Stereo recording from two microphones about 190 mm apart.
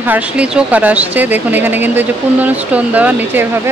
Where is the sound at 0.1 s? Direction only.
5° right (ahead or behind).